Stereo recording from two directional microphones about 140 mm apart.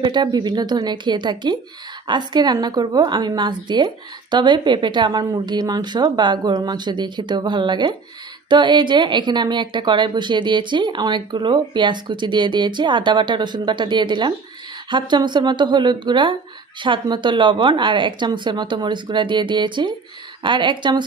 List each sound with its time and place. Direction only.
0.0 s a woman's voice: 35° right (ahead or behind)